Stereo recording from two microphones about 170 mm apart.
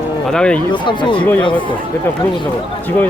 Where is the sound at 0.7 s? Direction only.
30° left (ahead or behind).